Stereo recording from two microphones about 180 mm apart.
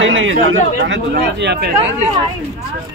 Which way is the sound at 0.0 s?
90° right.